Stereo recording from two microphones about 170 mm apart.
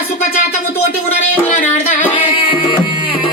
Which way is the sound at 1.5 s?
45° left (ahead or behind).